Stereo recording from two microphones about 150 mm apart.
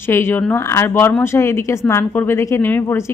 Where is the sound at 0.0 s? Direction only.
15° left (ahead or behind).